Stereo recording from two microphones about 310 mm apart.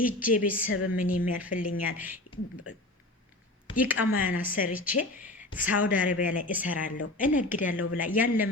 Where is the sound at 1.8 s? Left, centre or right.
Centre.